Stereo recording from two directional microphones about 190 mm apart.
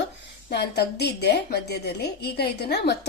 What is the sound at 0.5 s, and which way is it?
Speech, 60° left (ahead or behind).